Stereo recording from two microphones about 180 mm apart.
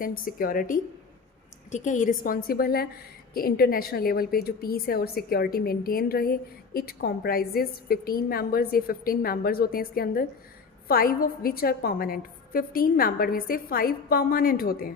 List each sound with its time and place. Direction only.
0.0 s a woman's voice: 50° left (ahead or behind)